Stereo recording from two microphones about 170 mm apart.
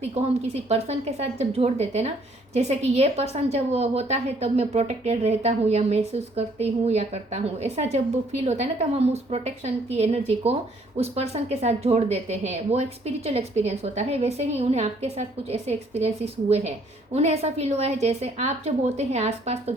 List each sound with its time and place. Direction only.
0.0 s a woman's voice: 40° right (ahead or behind)